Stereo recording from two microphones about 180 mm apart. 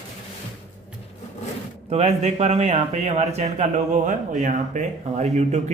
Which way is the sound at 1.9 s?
35° right (ahead or behind).